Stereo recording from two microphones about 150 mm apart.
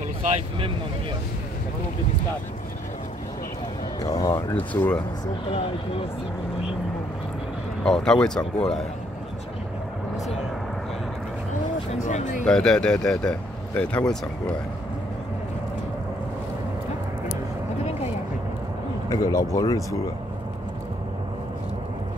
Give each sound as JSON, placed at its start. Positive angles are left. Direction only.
{"t": 4.1, "sound": "speech", "side_deg": 25}
{"t": 4.6, "sound": "speech", "side_deg": 10}
{"t": 7.8, "sound": "speech", "side_deg": 5}
{"t": 11.9, "sound": "speech", "side_deg": 50}
{"t": 12.4, "sound": "speech", "side_deg": 5}
{"t": 19.0, "sound": "speech", "side_deg": 25}